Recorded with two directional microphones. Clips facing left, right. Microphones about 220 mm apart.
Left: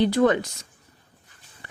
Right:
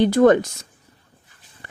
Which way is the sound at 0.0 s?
45° right (ahead or behind).